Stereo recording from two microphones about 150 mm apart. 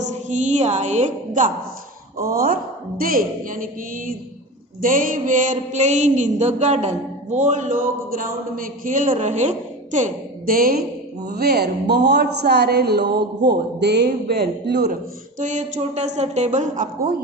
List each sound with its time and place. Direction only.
0.1 s a woman's voice: 55° right (ahead or behind)
2.1 s a woman's voice: 75° right (ahead or behind)
4.8 s mantra: 65° right (ahead or behind)
11.3 s a woman's voice: 90° right
15.4 s a woman's voice: 55° right (ahead or behind)